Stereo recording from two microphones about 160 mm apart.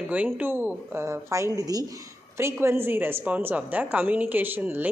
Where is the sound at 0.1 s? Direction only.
10° right (ahead or behind).